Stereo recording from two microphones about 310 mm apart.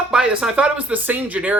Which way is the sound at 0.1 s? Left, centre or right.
Centre.